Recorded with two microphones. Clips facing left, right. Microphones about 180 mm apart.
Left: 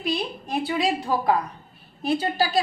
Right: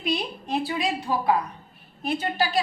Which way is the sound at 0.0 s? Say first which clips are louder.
Left 1 dB; centre (ahead or behind).